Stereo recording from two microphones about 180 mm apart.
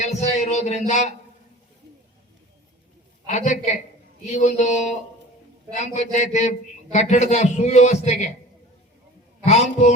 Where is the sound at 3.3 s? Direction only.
40° left (ahead or behind).